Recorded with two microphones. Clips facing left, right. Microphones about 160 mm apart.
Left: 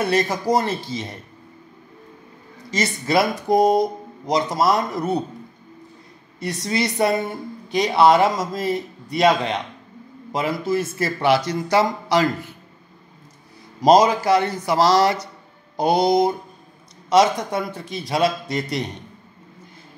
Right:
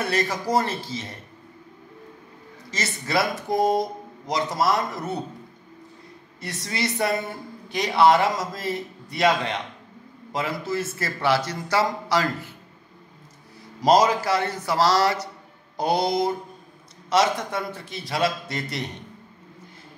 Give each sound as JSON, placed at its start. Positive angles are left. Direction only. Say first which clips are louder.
{"t": 0.0, "sound": "a man's voice", "louder": "left 5 dB", "side_deg": 15}
{"t": 2.7, "sound": "a man's voice", "louder": "left 6 dB", "side_deg": 15}
{"t": 6.4, "sound": "speech", "louder": "left 6 dB", "side_deg": 20}
{"t": 10.3, "sound": "speech", "louder": "left 5 dB", "side_deg": 20}
{"t": 13.7, "sound": "a man's voice", "louder": "left 4 dB", "side_deg": 15}